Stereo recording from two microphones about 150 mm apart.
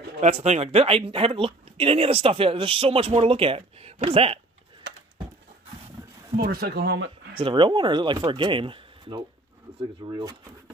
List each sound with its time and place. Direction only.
0.2 s speech: 50° right (ahead or behind)
6.3 s speech: 85° right
7.3 s speech: 35° right (ahead or behind)